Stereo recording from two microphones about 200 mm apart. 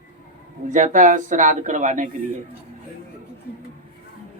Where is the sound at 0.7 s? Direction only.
40° right (ahead or behind).